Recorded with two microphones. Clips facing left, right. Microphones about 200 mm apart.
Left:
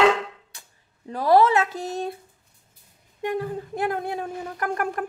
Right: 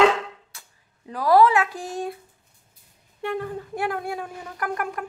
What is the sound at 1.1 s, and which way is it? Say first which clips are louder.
Speech: even; 25° left (ahead or behind).